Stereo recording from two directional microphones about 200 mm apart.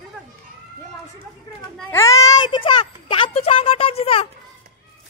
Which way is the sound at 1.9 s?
15° left (ahead or behind).